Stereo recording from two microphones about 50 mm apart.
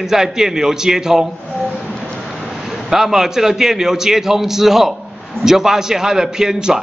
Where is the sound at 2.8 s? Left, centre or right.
Centre.